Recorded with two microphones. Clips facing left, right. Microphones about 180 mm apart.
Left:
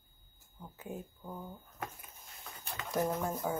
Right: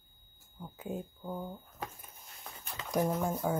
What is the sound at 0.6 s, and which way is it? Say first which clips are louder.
Speech: right 4 dB; 10° right (ahead or behind).